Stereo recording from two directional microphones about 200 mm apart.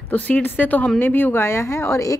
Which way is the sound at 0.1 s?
10° left (ahead or behind).